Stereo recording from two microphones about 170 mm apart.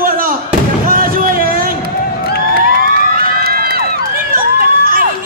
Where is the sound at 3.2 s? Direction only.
65° right (ahead or behind).